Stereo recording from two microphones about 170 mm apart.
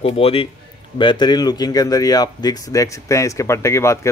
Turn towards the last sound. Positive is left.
turn(degrees=15)  # may be behind; listen again after turning